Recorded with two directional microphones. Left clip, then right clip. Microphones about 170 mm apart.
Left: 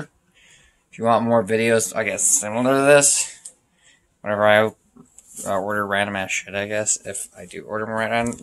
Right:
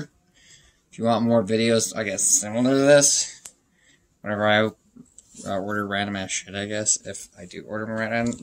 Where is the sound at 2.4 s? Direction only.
20° right (ahead or behind).